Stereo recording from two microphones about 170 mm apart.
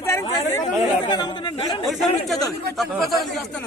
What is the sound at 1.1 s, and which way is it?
Speech, 25° left (ahead or behind).